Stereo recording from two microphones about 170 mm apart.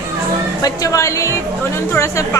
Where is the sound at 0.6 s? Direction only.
20° left (ahead or behind).